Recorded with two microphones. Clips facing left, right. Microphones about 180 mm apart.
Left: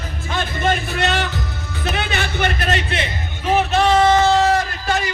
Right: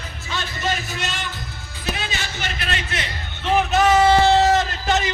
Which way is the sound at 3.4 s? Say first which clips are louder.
Left 1 dB; centre (ahead or behind).